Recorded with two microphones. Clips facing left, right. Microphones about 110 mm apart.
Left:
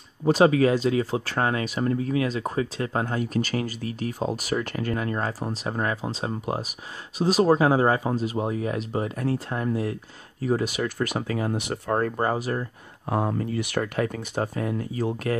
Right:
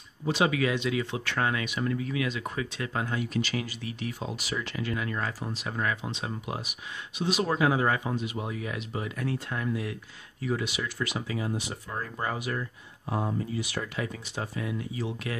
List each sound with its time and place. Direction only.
0.2 s speech: 40° left (ahead or behind)
12.3 s speech: 35° left (ahead or behind)
13.1 s speech: 60° left (ahead or behind)